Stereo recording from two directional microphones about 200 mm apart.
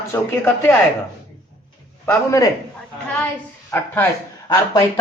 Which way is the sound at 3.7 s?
10° left (ahead or behind).